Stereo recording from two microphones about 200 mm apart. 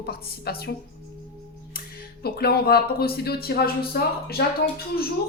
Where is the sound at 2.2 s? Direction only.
50° left (ahead or behind).